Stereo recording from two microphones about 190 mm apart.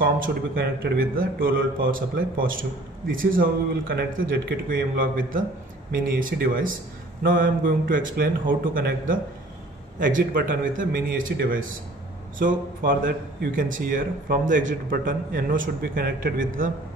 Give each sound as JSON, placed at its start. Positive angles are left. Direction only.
{"t": 0.0, "sound": "a man's voice", "side_deg": -50}
{"t": 12.4, "sound": "a man's voice", "side_deg": -45}